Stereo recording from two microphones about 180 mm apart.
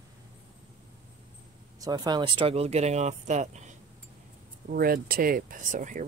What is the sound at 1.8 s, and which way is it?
Speech, 20° right (ahead or behind).